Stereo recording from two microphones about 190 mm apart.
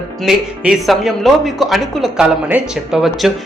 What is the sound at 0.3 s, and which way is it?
A woman's voice, centre (ahead or behind).